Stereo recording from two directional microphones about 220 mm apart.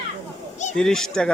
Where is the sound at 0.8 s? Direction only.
Centre (ahead or behind).